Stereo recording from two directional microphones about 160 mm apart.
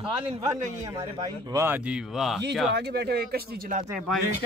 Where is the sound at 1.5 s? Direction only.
10° right (ahead or behind).